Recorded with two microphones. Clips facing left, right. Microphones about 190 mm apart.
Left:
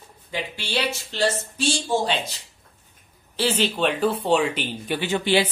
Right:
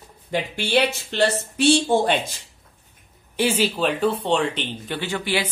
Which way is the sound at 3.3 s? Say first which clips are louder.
Right 2 dB; 10° right (ahead or behind).